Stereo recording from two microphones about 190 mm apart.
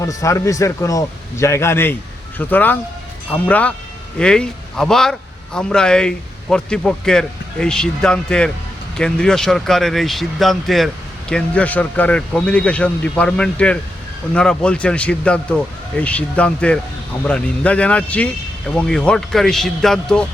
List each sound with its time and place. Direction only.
0.0 s a man's voice: 15° left (ahead or behind)